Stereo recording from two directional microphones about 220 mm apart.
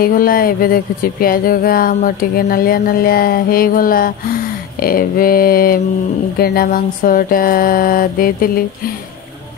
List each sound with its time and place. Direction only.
0.0 s speech: 40° left (ahead or behind)